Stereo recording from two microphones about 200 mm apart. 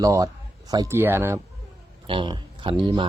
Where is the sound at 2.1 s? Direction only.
25° right (ahead or behind).